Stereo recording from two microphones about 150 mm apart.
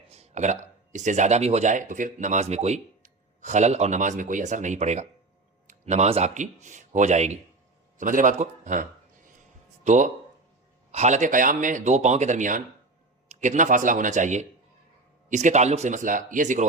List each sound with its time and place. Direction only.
0.1 s speech: 45° right (ahead or behind)
7.9 s speech: 60° right (ahead or behind)